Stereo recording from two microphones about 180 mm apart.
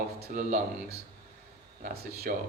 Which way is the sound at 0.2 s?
45° right (ahead or behind).